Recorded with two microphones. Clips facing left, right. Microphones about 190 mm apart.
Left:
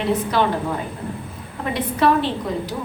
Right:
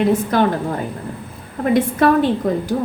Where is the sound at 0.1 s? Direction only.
45° right (ahead or behind).